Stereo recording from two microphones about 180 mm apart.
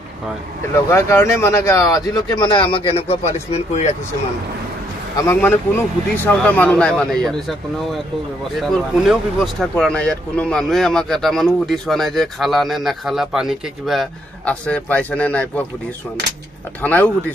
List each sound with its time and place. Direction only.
0.7 s speech: 15° left (ahead or behind); by 3.9 s 40° left (ahead or behind)
5.1 s speech: 15° left (ahead or behind)
16.8 s speech: 10° left (ahead or behind)